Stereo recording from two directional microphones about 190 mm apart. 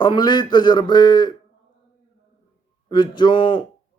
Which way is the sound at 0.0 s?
25° left (ahead or behind).